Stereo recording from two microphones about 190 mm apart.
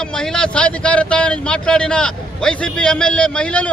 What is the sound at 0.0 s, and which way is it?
A man's voice, 5° left (ahead or behind).